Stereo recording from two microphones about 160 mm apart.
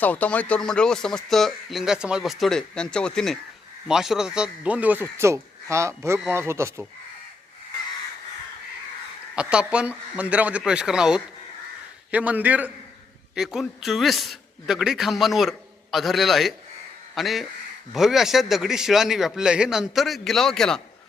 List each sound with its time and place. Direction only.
0.0 s a man's voice: 10° left (ahead or behind); by 6.8 s 15° right (ahead or behind)
9.3 s a man's voice: 5° right (ahead or behind)